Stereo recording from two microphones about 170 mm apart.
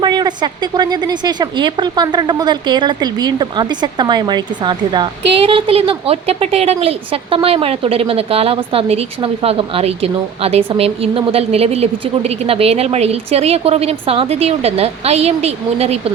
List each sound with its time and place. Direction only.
0.0 s a woman's voice: 25° right (ahead or behind)